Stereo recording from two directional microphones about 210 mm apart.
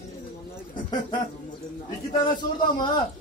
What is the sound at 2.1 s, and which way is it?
Speech, 20° left (ahead or behind).